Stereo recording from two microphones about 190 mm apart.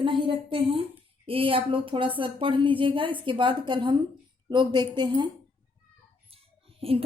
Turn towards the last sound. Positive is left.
turn(degrees=-30)  # may be behind; listen again after turning